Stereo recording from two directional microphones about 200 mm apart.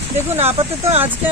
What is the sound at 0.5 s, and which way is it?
Speech, 30° right (ahead or behind).